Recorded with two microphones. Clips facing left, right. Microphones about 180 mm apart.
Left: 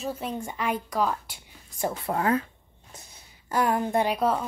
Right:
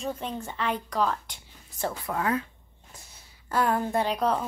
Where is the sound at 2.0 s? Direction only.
35° left (ahead or behind).